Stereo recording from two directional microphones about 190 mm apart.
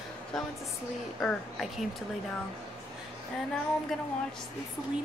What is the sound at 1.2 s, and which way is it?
Speech, centre (ahead or behind).